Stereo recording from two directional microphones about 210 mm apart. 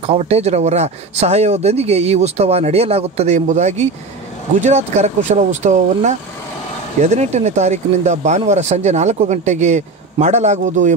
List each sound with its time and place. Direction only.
0.0 s speech: 30° right (ahead or behind)